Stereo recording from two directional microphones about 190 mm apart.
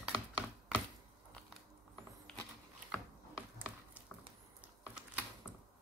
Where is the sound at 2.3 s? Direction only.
5° left (ahead or behind).